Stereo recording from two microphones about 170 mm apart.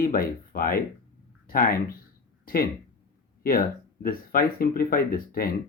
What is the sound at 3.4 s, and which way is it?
Speech, 60° left (ahead or behind).